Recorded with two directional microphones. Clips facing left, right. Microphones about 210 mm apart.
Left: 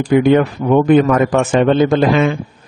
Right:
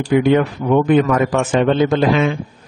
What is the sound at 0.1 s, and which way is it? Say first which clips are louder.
A man's voice: left 2 dB; 45° left (ahead or behind).